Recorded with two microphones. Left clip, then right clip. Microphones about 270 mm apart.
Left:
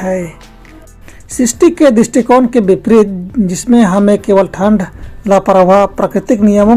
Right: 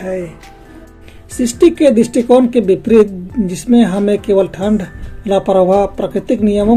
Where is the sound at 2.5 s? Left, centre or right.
Left.